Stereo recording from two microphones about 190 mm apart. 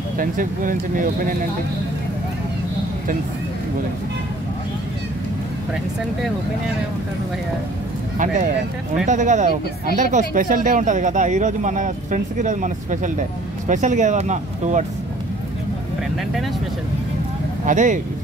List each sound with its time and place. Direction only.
0.2 s speech: 45° right (ahead or behind)
8.9 s speech: 40° right (ahead or behind)
17.6 s speech: 40° right (ahead or behind)